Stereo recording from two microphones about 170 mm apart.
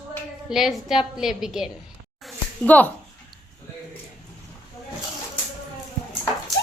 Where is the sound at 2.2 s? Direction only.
10° left (ahead or behind).